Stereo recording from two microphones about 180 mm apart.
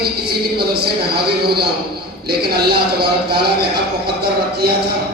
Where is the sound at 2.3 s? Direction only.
60° right (ahead or behind).